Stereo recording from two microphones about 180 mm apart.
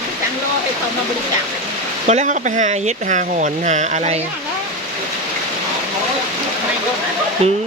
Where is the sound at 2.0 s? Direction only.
40° right (ahead or behind).